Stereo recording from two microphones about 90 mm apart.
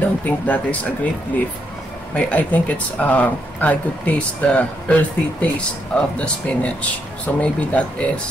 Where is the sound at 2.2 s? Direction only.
15° left (ahead or behind).